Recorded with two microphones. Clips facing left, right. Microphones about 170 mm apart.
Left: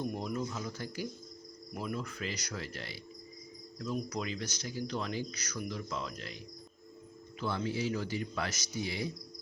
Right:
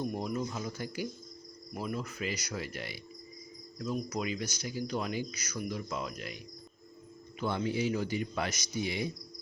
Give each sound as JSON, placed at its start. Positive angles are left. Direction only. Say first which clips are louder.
{"t": 0.0, "sound": "speech", "louder": "right 2 dB", "side_deg": -5}